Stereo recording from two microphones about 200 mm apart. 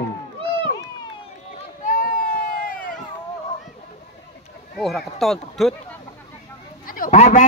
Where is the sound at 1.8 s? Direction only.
40° left (ahead or behind).